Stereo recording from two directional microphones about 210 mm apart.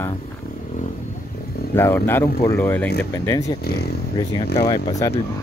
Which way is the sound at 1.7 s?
10° left (ahead or behind).